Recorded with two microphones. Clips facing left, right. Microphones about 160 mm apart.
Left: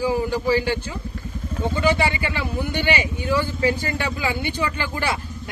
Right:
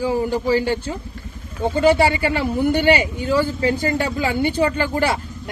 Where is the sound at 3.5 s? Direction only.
40° right (ahead or behind).